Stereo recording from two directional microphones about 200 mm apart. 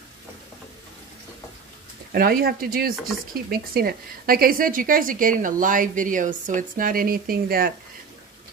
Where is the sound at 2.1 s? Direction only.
50° right (ahead or behind).